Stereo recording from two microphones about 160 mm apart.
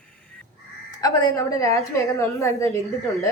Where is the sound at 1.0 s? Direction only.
20° left (ahead or behind).